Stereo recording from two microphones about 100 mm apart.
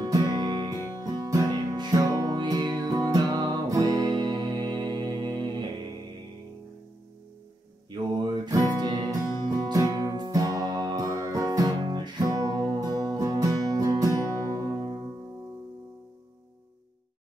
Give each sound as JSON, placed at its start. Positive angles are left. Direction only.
{"t": 0.0, "sound": "music", "side_deg": -40}
{"t": 7.9, "sound": "mantra", "side_deg": -45}
{"t": 8.7, "sound": "music", "side_deg": -45}